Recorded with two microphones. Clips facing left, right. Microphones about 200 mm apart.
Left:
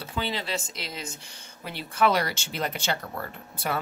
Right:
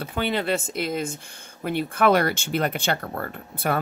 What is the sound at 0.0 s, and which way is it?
Speech, 55° right (ahead or behind).